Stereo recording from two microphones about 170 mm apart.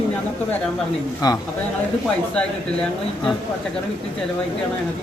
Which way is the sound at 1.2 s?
20° left (ahead or behind).